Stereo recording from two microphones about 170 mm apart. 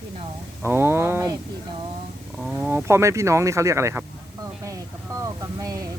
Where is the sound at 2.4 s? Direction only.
5° right (ahead or behind).